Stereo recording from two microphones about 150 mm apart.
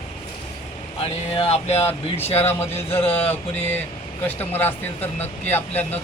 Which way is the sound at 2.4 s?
15° left (ahead or behind).